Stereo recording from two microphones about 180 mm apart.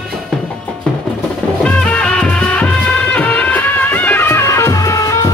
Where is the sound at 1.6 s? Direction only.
5° left (ahead or behind).